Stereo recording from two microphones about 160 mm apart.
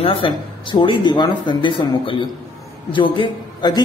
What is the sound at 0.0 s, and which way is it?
Speech, 30° left (ahead or behind).